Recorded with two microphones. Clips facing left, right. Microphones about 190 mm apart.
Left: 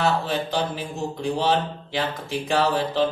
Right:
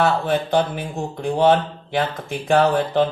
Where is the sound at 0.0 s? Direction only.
55° right (ahead or behind).